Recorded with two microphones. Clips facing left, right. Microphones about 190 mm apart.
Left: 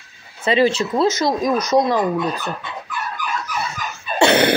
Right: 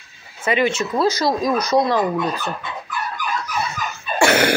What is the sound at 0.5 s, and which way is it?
Speech, 30° left (ahead or behind).